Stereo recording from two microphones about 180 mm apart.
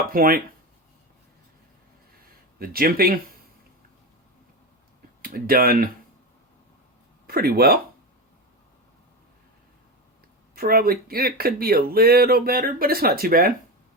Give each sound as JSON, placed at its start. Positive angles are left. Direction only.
{"t": 0.1, "sound": "speech", "side_deg": -55}
{"t": 2.6, "sound": "speech", "side_deg": -55}
{"t": 5.2, "sound": "speech", "side_deg": -55}
{"t": 7.3, "sound": "speech", "side_deg": -55}
{"t": 10.5, "sound": "speech", "side_deg": -55}